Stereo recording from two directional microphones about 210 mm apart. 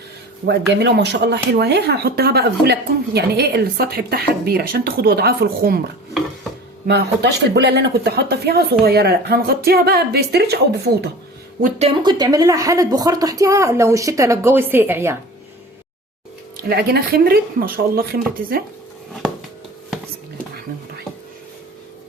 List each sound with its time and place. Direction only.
0.4 s speech: 55° right (ahead or behind)
6.8 s speech: 55° right (ahead or behind)
11.6 s speech: 30° right (ahead or behind); by 15.2 s 10° right (ahead or behind)
16.6 s speech: 50° right (ahead or behind)